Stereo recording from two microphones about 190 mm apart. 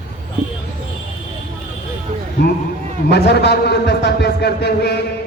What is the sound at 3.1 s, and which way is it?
A man's voice, 60° left (ahead or behind).